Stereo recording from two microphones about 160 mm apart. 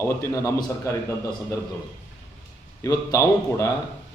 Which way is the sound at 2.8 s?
20° left (ahead or behind).